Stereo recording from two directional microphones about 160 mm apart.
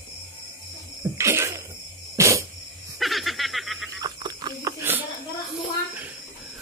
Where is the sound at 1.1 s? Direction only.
15° right (ahead or behind).